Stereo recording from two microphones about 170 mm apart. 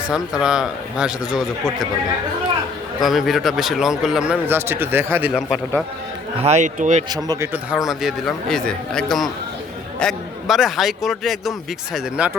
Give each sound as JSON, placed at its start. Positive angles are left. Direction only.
{"t": 0.1, "sound": "speech", "side_deg": -5}
{"t": 3.0, "sound": "speech", "side_deg": 0}
{"t": 5.3, "sound": "speech", "side_deg": 0}
{"t": 6.4, "sound": "a man's voice", "side_deg": -40}
{"t": 7.5, "sound": "speech", "side_deg": -5}